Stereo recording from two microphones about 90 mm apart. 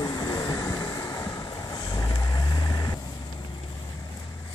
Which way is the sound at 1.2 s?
45° left (ahead or behind).